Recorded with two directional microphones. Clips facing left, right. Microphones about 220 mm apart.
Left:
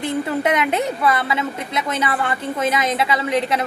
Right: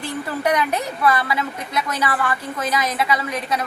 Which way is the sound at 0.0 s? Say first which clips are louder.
Left 3 dB; 25° left (ahead or behind).